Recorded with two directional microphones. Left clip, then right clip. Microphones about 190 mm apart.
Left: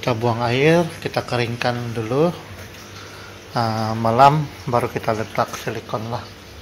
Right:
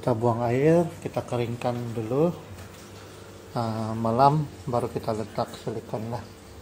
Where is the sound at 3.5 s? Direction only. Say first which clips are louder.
Left 8 dB; centre (ahead or behind).